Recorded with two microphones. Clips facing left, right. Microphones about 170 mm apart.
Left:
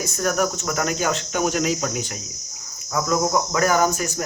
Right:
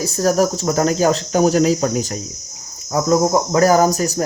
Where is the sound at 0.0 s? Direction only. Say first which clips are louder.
Right 6 dB; 35° right (ahead or behind).